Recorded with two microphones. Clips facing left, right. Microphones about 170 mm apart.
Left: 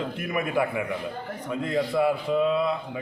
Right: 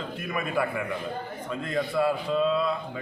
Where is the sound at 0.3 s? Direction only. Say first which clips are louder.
Left 2 dB; 15° left (ahead or behind).